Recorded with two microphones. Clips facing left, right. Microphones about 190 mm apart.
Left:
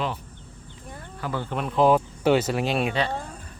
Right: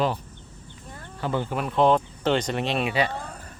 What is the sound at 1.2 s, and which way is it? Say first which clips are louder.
Speech: right 3 dB; 25° right (ahead or behind).